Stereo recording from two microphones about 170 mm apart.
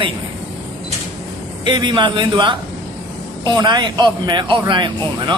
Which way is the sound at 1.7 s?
25° right (ahead or behind).